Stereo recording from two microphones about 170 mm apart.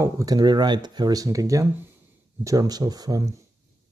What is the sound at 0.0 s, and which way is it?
Speech, 20° right (ahead or behind).